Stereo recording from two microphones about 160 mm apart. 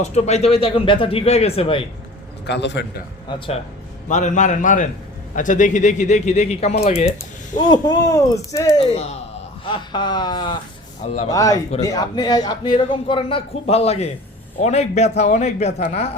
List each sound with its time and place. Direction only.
0.0 s a man's voice: 45° left (ahead or behind)
2.5 s a man's voice: 90° left
3.2 s a man's voice: 35° left (ahead or behind)
4.1 s a man's voice: 50° left (ahead or behind)
7.6 s speech: 25° left (ahead or behind)
8.8 s a man's voice: 40° left (ahead or behind)
9.6 s speech: 30° left (ahead or behind)
11.0 s a man's voice: 45° left (ahead or behind)
11.3 s a man's voice: 20° left (ahead or behind); by 16.0 s 50° left (ahead or behind)